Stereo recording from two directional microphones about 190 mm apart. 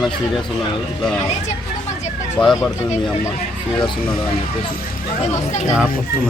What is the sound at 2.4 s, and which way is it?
Speech, centre (ahead or behind).